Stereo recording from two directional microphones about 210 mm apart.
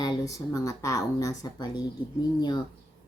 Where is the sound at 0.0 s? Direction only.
15° left (ahead or behind).